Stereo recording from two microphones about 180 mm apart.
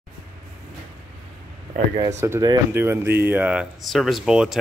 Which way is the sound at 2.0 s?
15° right (ahead or behind).